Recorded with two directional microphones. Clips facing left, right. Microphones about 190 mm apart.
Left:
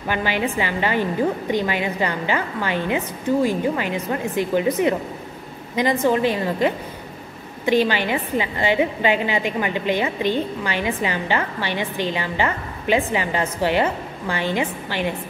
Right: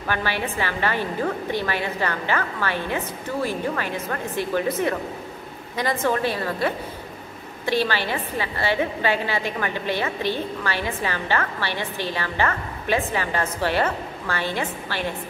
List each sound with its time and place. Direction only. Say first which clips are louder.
0.0 s a woman's voice: left 3 dB; 15° left (ahead or behind)